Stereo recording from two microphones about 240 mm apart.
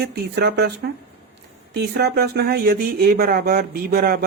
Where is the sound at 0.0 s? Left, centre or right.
Right.